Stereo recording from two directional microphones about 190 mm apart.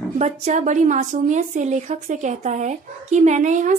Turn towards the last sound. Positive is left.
turn(degrees=-40)  # may be behind; listen again after turning